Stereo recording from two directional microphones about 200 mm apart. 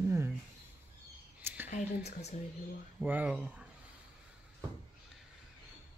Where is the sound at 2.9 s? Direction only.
5° right (ahead or behind).